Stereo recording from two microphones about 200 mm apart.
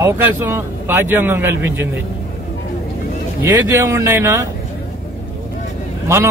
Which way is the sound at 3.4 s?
15° right (ahead or behind).